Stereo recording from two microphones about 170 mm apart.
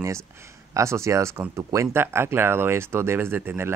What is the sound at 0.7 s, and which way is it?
Speech, 15° right (ahead or behind).